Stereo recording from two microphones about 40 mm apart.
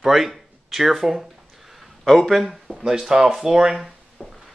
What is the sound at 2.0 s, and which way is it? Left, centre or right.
Speech, centre.